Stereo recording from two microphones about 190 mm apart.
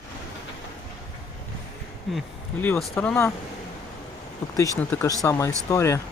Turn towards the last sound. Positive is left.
turn(degrees=15)  # may be behind; listen again after turning